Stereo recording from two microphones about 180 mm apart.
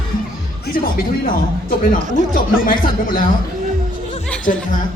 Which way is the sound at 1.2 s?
50° left (ahead or behind).